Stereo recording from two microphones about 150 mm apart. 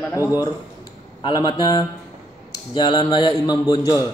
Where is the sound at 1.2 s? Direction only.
30° left (ahead or behind).